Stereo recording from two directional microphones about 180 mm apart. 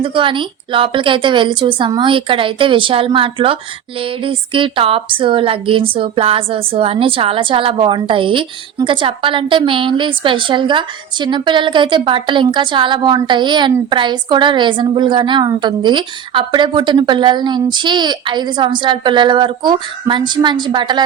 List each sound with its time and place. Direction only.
0.0 s a woman's voice: 30° right (ahead or behind)